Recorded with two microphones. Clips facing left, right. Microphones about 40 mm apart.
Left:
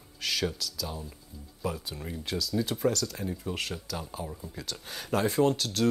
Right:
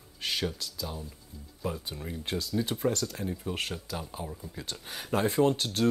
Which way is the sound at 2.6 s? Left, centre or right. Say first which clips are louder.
Left 2 dB; centre.